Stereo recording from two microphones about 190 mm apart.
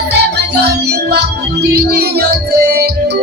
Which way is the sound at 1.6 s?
55° right (ahead or behind).